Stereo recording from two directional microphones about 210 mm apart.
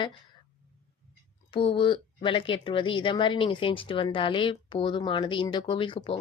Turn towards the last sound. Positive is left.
turn(degrees=25)  # may be behind; listen again after turning